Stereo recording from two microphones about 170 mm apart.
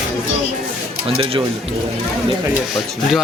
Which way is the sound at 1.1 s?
35° right (ahead or behind).